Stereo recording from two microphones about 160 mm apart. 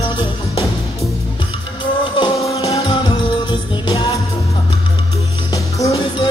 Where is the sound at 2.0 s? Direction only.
30° left (ahead or behind).